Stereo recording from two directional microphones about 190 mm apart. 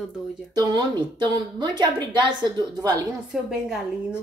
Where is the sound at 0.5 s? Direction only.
20° right (ahead or behind).